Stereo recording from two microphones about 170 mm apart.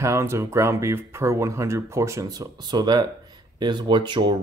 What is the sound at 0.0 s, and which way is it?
Speech, 15° right (ahead or behind).